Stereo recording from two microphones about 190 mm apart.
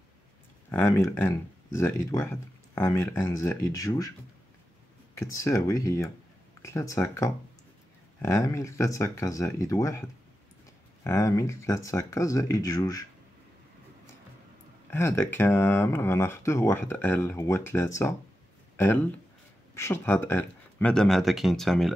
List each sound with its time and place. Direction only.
0.7 s speech: 10° left (ahead or behind)
5.2 s speech: 15° left (ahead or behind)
11.1 s speech: 15° left (ahead or behind)
14.9 s speech: 15° left (ahead or behind)
19.7 s speech: 15° left (ahead or behind)